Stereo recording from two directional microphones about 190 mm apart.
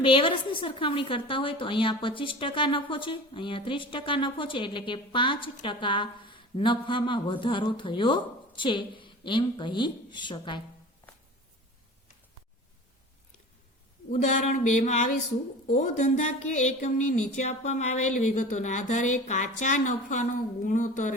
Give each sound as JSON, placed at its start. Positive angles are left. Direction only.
{"t": 0.0, "sound": "a woman's voice", "side_deg": 25}
{"t": 14.1, "sound": "speech", "side_deg": 40}